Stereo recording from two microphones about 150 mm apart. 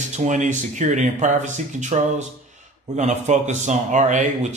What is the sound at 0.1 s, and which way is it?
Speech, 55° right (ahead or behind).